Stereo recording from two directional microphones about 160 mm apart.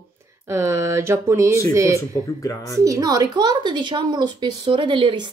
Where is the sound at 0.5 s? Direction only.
15° right (ahead or behind).